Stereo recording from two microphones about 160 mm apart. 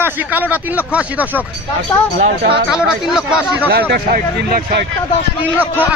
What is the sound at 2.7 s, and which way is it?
Speech, 5° right (ahead or behind).